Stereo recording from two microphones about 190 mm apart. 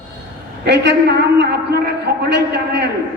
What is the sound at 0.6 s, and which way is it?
A man's voice, 65° right (ahead or behind).